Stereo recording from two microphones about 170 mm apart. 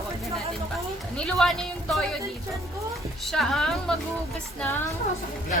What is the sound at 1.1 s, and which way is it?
Speech, 5° left (ahead or behind).